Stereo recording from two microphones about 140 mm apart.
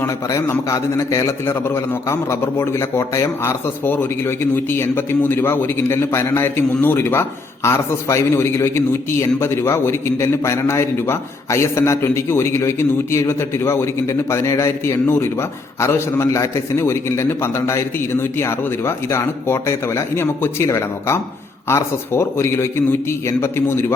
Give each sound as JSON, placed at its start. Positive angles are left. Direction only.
{"t": 0.0, "sound": "a man's voice", "side_deg": 20}